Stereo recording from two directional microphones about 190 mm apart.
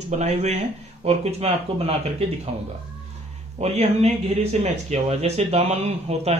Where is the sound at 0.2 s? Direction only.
35° right (ahead or behind).